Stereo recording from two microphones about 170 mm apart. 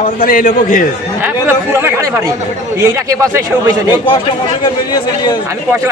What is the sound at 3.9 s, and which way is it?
Speech, 30° left (ahead or behind).